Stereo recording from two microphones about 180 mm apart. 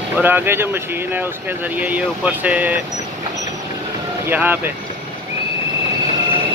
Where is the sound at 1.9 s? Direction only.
10° right (ahead or behind).